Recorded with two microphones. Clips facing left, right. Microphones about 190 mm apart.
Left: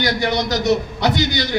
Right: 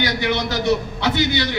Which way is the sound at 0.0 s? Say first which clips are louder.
Left 2 dB; 45° left (ahead or behind).